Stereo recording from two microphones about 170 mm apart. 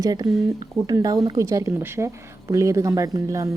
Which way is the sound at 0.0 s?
20° right (ahead or behind).